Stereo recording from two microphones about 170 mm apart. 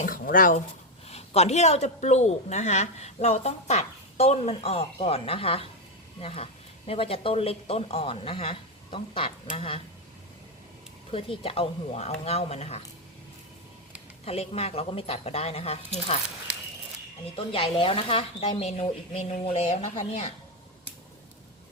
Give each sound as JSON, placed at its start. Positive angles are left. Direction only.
{"t": 0.0, "sound": "speech", "side_deg": 55}
{"t": 1.0, "sound": "a woman's voice", "side_deg": 40}
{"t": 11.1, "sound": "a woman's voice", "side_deg": 35}
{"t": 14.3, "sound": "a woman's voice", "side_deg": 35}
{"t": 17.3, "sound": "a woman's voice", "side_deg": 30}